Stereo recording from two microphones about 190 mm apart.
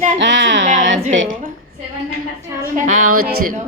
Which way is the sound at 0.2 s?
75° right (ahead or behind).